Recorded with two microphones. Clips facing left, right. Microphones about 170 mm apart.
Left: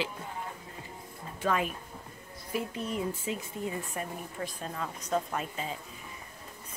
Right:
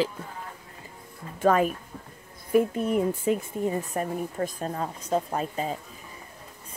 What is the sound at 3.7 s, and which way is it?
Speech, 40° right (ahead or behind).